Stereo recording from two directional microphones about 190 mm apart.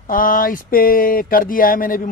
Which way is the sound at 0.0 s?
45° left (ahead or behind).